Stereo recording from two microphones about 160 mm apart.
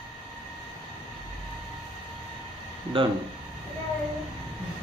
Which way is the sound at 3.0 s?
35° right (ahead or behind).